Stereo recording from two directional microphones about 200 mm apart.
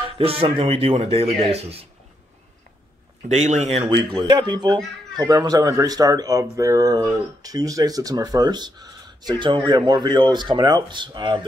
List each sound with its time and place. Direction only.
0.0 s speech: 30° right (ahead or behind)
3.3 s speech: 35° right (ahead or behind)
3.9 s speech: 20° right (ahead or behind)